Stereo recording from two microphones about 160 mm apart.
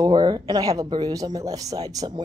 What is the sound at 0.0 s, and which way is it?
Speech, 25° right (ahead or behind).